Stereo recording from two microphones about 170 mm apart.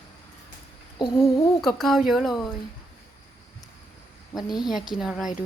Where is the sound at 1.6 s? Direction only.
Centre (ahead or behind).